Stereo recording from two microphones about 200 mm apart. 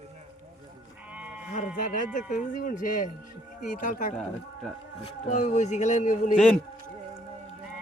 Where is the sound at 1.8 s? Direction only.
40° left (ahead or behind).